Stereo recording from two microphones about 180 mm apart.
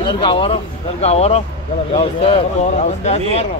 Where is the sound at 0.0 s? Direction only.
25° left (ahead or behind).